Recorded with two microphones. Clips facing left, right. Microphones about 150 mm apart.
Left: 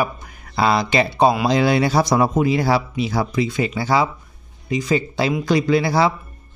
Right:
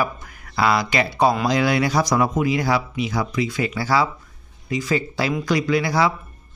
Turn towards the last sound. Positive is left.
turn(degrees=30)  # may be behind; listen again after turning